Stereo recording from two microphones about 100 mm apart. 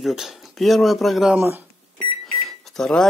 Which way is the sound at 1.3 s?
20° right (ahead or behind).